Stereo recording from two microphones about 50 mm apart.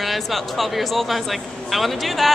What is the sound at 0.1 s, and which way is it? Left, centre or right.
Speech, centre.